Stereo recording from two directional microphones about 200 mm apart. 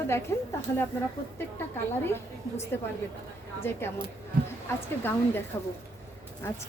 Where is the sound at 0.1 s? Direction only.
15° left (ahead or behind).